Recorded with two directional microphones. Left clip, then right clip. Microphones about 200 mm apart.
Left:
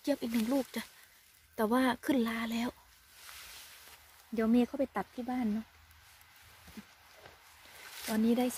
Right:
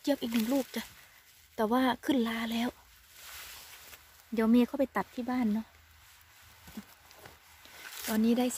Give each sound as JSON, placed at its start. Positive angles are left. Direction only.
{"t": 0.0, "sound": "speech", "side_deg": -5}
{"t": 4.4, "sound": "speech", "side_deg": -15}
{"t": 8.1, "sound": "speech", "side_deg": -10}